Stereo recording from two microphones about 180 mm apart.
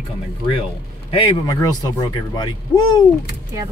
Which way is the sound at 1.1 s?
30° left (ahead or behind).